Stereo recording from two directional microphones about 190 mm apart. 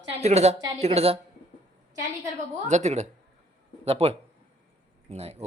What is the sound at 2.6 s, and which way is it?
Speech, 35° right (ahead or behind).